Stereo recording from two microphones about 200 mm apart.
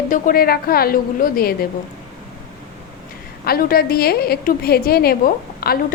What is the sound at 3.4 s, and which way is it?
A woman's voice, 50° left (ahead or behind).